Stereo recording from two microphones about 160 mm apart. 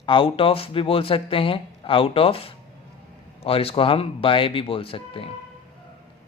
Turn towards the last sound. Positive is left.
turn(degrees=35)  # may be behind; listen again after turning